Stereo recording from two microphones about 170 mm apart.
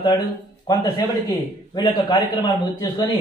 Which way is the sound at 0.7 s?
20° left (ahead or behind).